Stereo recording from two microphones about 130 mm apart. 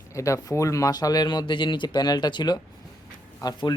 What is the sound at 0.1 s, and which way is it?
Speech, 25° left (ahead or behind).